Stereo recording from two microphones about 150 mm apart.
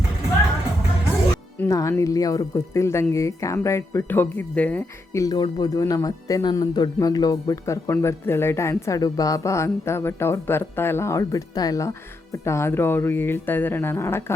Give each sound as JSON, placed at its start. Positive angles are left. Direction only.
{"t": 1.5, "sound": "speech", "side_deg": 20}
{"t": 5.1, "sound": "speech", "side_deg": 25}